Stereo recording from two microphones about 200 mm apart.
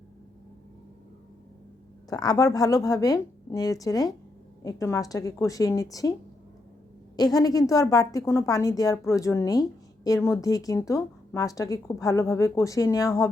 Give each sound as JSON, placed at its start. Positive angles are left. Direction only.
{"t": 2.0, "sound": "speech", "side_deg": 20}
{"t": 7.2, "sound": "speech", "side_deg": 20}